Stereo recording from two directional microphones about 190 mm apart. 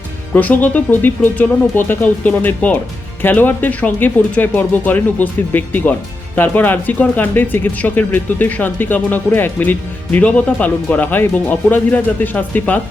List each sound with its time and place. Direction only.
0.3 s speech: 10° left (ahead or behind)